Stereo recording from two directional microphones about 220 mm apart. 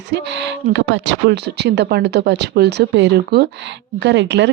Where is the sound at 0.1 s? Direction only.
55° right (ahead or behind).